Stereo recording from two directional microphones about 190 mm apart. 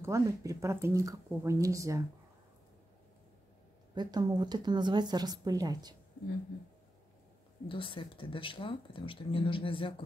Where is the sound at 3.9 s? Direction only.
20° right (ahead or behind).